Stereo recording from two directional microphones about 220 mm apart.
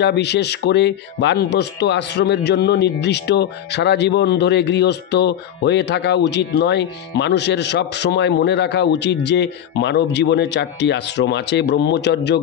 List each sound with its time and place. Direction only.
0.0 s a man's voice: 50° left (ahead or behind)